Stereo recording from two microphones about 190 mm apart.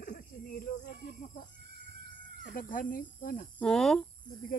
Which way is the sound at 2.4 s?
45° left (ahead or behind).